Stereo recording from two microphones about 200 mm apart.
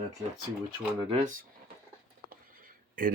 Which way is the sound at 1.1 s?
40° right (ahead or behind).